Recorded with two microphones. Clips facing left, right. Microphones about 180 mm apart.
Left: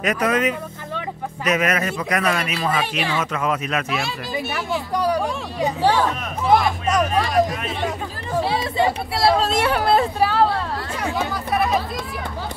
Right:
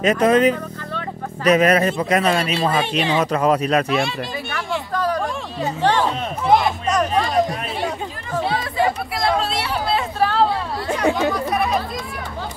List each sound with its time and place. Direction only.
0.0 s speech: 25° right (ahead or behind)
4.9 s speech: 10° left (ahead or behind)
8.7 s speech: 30° left (ahead or behind)
9.4 s speech: 45° left (ahead or behind)
10.2 s speech: centre (ahead or behind)